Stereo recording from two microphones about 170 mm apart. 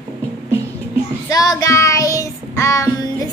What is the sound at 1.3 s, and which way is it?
Child singing, 20° left (ahead or behind).